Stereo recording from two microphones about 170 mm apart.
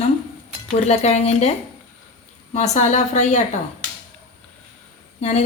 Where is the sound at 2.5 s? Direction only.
40° left (ahead or behind).